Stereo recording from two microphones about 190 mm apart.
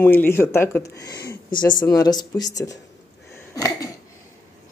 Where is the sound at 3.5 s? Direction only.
15° left (ahead or behind).